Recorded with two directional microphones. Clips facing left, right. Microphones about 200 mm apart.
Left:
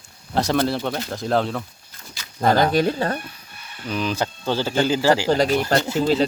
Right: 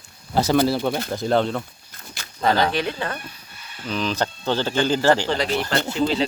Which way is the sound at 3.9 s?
10° left (ahead or behind).